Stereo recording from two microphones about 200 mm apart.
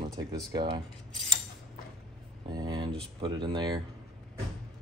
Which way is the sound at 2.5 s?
20° right (ahead or behind).